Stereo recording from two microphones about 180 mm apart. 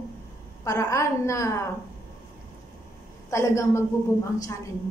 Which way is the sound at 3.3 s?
15° left (ahead or behind).